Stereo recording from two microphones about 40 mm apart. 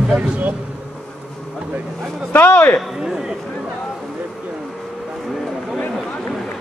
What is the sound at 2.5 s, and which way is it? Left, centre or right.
Speech, left.